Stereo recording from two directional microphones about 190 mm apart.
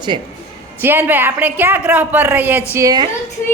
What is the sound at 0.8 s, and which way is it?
Speech, 10° right (ahead or behind).